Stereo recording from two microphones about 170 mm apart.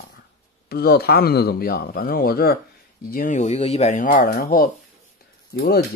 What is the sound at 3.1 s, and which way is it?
Speech, 50° left (ahead or behind).